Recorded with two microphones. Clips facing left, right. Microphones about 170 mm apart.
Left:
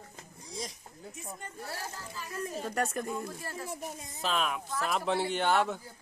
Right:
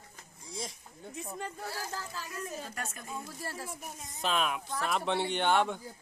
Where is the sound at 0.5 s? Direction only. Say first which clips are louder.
Left 1 dB; centre (ahead or behind).